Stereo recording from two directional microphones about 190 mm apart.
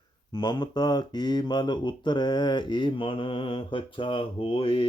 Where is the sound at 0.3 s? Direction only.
25° left (ahead or behind).